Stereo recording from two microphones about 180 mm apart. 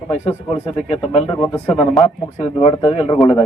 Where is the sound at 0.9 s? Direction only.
30° left (ahead or behind).